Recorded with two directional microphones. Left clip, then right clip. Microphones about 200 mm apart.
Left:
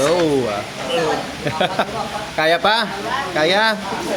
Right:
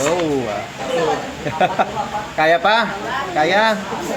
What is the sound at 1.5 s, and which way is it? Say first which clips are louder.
Speech: right 3 dB; 25° left (ahead or behind).